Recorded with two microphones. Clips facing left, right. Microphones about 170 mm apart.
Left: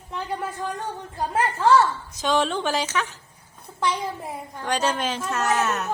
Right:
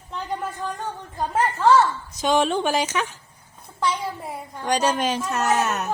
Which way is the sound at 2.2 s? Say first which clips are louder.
Right 2 dB; 15° right (ahead or behind).